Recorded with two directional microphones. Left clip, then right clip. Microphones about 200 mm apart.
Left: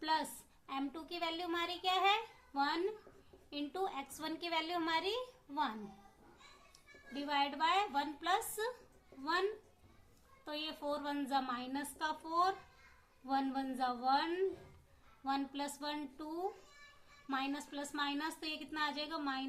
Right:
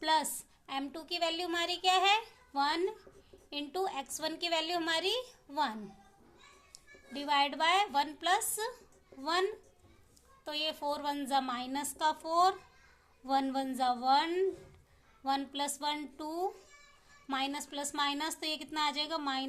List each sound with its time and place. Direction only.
0.0 s a sound: 50° right (ahead or behind)
0.7 s a woman's voice: 45° right (ahead or behind)
6.7 s a woman's voice: 45° right (ahead or behind)